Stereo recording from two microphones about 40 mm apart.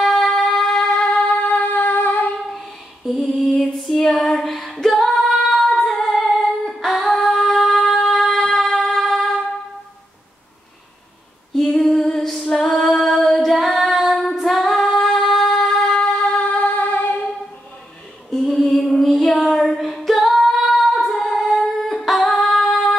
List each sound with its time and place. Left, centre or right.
0.0 s music: centre; by 1.4 s left
1.4 s music: left
2.5 s a sound: centre
3.4 s female singing: centre
8.9 s a sound: centre
11.7 s female singing: centre
16.4 s singing: left
18.5 s female singing: centre
19.3 s a sound: centre
19.8 s singing: centre